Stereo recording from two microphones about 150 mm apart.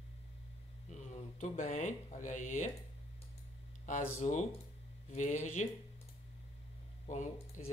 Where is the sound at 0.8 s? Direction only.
50° left (ahead or behind).